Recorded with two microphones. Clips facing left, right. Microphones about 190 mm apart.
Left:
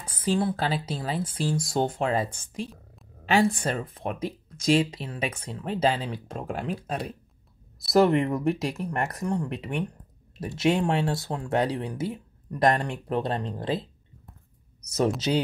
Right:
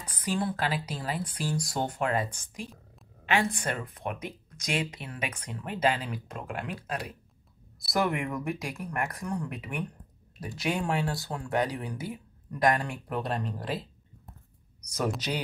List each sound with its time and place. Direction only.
0.0 s speech: 25° left (ahead or behind)
3.3 s speech: 30° left (ahead or behind)